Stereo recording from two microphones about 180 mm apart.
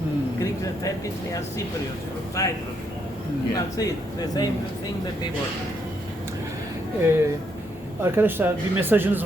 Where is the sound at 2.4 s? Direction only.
20° left (ahead or behind).